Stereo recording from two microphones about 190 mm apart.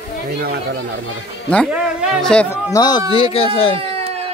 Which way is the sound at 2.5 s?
20° left (ahead or behind).